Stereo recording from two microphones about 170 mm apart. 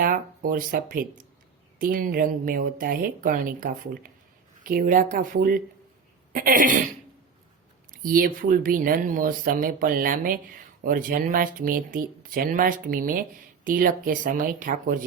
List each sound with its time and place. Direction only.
0.0 s speech: 55° right (ahead or behind)
8.0 s speech: 55° right (ahead or behind)